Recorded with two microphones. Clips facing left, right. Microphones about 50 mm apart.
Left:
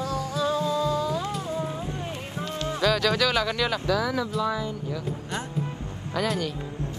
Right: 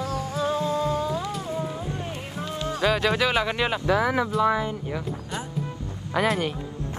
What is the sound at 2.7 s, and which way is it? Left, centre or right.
Speech, right.